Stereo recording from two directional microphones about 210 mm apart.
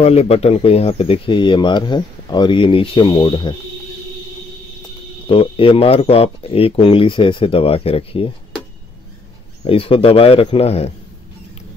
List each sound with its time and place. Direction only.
0.0 s speech: 30° left (ahead or behind)
5.2 s speech: 25° left (ahead or behind)
9.7 s speech: 25° left (ahead or behind)